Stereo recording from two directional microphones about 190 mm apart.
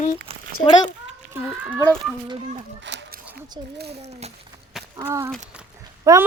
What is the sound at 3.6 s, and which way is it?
Speech, 25° right (ahead or behind).